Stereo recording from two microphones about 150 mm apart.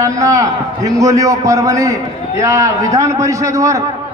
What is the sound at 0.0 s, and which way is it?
A man's voice, 20° right (ahead or behind).